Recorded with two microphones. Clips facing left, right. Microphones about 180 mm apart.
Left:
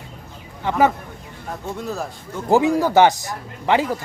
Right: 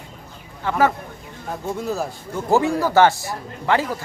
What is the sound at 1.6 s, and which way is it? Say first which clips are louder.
Speech: right 3 dB; centre (ahead or behind).